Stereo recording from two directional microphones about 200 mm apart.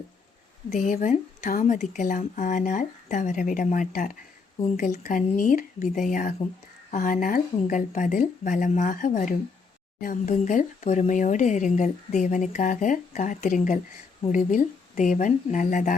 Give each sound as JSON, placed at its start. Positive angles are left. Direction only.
{"t": 0.7, "sound": "speech", "side_deg": 40}